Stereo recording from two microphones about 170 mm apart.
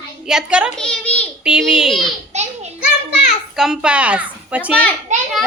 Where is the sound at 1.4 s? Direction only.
5° right (ahead or behind).